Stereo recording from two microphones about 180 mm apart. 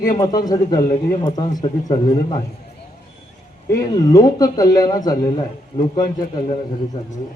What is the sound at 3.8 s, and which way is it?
Speech, 20° left (ahead or behind).